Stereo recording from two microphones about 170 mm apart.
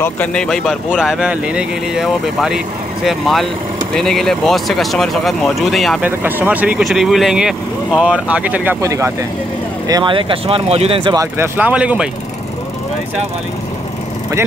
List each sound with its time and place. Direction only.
0.0 s speech: 5° left (ahead or behind)
6.0 s speech: 10° right (ahead or behind); by 11.2 s 30° right (ahead or behind)
11.3 s speech: 10° right (ahead or behind)